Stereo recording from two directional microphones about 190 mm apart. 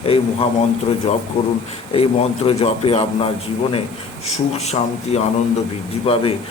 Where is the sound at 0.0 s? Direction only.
30° left (ahead or behind).